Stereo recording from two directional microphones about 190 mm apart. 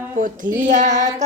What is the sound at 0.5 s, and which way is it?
Child singing, 40° right (ahead or behind).